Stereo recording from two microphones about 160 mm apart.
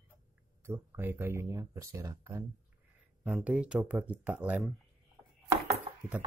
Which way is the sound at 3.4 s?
5° right (ahead or behind).